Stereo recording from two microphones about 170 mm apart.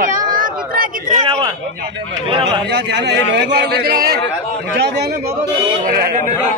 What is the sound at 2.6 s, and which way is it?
A man's voice, 85° right.